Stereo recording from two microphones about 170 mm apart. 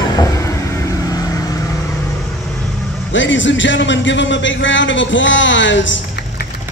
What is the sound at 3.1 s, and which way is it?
Speech, 90° left.